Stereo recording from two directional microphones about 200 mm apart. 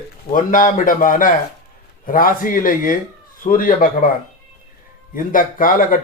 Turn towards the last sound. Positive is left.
turn(degrees=45)  # may be behind; listen again after turning